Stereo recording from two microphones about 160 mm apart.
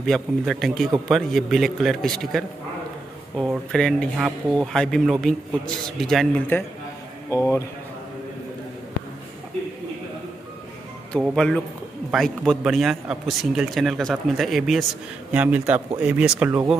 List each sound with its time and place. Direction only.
0.0 s a man's voice: centre (ahead or behind)
6.5 s a man's voice: 15° left (ahead or behind)
11.2 s a man's voice: 5° left (ahead or behind)